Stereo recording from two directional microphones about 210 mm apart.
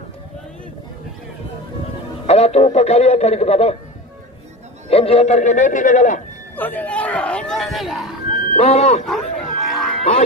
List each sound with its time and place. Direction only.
2.2 s radio: 30° left (ahead or behind)
4.8 s a man's voice: 30° left (ahead or behind)
6.5 s speech: 10° left (ahead or behind)
8.5 s a man's voice: 30° left (ahead or behind)
9.0 s a sound: centre (ahead or behind)